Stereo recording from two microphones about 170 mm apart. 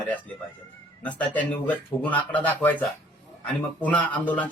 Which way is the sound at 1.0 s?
10° left (ahead or behind).